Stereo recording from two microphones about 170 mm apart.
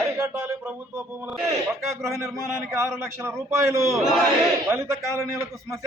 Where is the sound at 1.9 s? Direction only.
15° right (ahead or behind).